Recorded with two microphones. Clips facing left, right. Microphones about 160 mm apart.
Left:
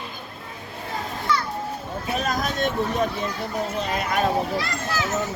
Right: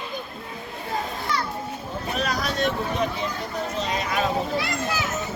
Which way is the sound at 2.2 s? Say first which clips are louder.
Even; 50° left (ahead or behind).